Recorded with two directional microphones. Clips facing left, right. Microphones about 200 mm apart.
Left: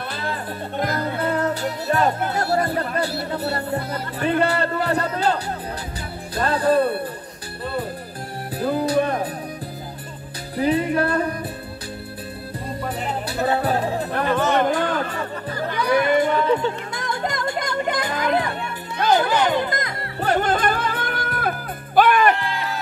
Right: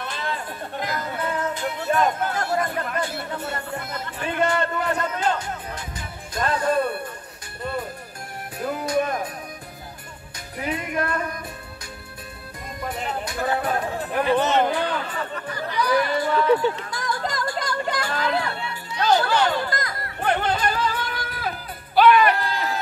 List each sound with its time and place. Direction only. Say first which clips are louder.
0.1 s music: left 2 dB; 35° left (ahead or behind)
2.3 s speech: left 3 dB; 35° left (ahead or behind)
8.5 s speech: left 4 dB; 35° left (ahead or behind)
10.5 s speech: left 8 dB; 30° left (ahead or behind)
12.8 s speech: even; 35° left (ahead or behind)
14.3 s speech: even; 20° right (ahead or behind)
14.7 s a sound: left 3 dB; 45° left (ahead or behind)
15.8 s a sound: left 4 dB; 25° left (ahead or behind)
16.9 s music: left 2 dB; 25° left (ahead or behind)
19.1 s speech: left 3 dB; 20° left (ahead or behind)
20.2 s music: left 3 dB; 40° left (ahead or behind)